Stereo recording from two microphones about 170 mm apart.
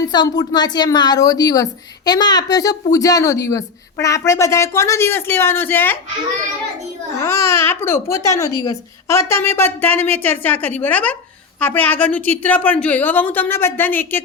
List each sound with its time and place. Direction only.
0.1 s speech: 25° left (ahead or behind)
7.3 s a woman's voice: 15° left (ahead or behind)